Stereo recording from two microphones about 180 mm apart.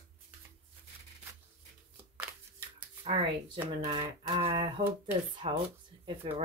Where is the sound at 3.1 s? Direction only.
35° right (ahead or behind).